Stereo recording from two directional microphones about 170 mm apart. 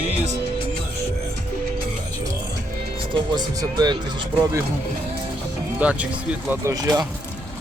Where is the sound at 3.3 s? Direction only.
25° right (ahead or behind).